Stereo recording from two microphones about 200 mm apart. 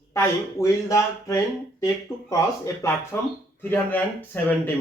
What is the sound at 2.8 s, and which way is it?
Speech, 15° left (ahead or behind).